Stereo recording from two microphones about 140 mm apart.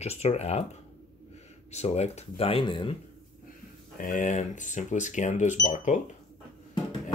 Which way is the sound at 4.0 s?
70° left (ahead or behind).